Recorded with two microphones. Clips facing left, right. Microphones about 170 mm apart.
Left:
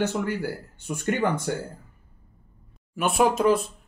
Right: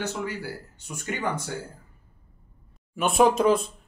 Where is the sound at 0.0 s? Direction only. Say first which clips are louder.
Left 5 dB; 55° left (ahead or behind).